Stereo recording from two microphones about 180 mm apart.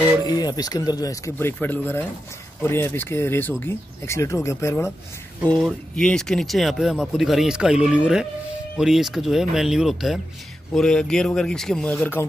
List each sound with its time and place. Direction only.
0.2 s speech: 20° left (ahead or behind)
5.5 s speech: 5° left (ahead or behind)